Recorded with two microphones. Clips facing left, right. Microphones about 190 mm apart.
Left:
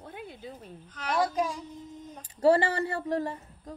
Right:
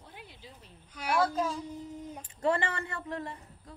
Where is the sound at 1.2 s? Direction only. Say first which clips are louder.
Left 1 dB; 15° left (ahead or behind).